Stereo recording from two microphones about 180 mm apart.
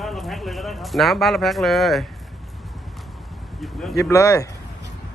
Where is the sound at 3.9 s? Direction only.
15° left (ahead or behind).